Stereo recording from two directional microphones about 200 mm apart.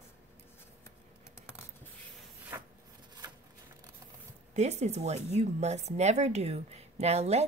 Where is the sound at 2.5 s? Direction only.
10° right (ahead or behind).